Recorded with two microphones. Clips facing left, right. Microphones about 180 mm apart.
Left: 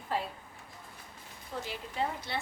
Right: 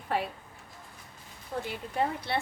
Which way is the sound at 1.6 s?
60° right (ahead or behind).